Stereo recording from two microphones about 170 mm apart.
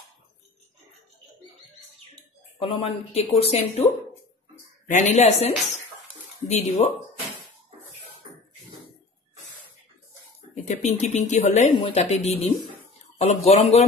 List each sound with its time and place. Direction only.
2.6 s speech: 35° left (ahead or behind)
10.5 s speech: 45° left (ahead or behind)